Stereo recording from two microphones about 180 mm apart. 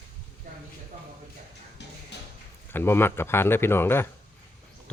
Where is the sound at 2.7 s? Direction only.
10° left (ahead or behind).